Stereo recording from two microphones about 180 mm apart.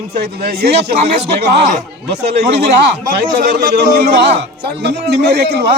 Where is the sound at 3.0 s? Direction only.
50° right (ahead or behind).